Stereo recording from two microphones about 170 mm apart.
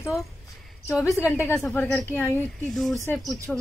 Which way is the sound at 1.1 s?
15° left (ahead or behind).